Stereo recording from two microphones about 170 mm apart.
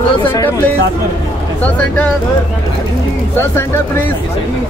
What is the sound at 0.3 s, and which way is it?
Speech, 15° left (ahead or behind).